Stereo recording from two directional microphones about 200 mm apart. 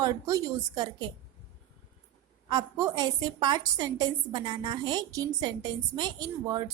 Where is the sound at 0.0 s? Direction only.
15° right (ahead or behind).